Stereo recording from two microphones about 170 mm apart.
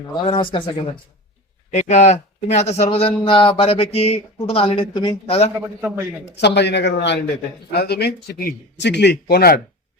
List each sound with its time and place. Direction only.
0.1 s speech: 30° left (ahead or behind)
1.7 s a man's voice: 45° left (ahead or behind)
5.5 s a man's voice: 10° right (ahead or behind)
6.4 s a man's voice: 85° left
7.7 s a man's voice: 70° left (ahead or behind)